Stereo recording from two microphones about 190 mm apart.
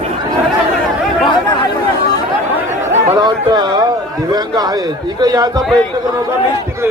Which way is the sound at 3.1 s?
20° right (ahead or behind).